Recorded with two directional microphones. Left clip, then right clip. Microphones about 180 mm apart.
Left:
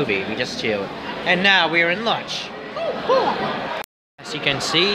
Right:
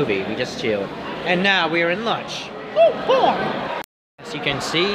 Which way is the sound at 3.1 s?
50° right (ahead or behind).